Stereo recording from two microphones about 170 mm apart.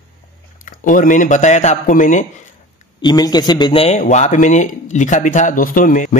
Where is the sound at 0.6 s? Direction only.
50° left (ahead or behind).